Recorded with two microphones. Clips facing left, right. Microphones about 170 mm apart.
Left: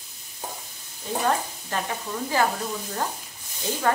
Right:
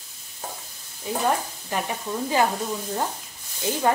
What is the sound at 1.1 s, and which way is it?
Dishes, 10° right (ahead or behind).